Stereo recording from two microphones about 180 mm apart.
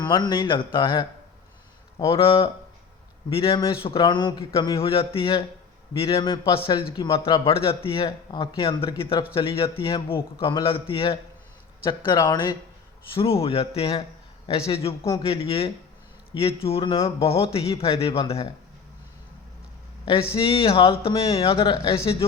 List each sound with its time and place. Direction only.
0.0 s a man's voice: 25° left (ahead or behind)
2.0 s a man's voice: 30° left (ahead or behind)
7.4 s a man's voice: 30° left (ahead or behind)
20.1 s a man's voice: 30° left (ahead or behind)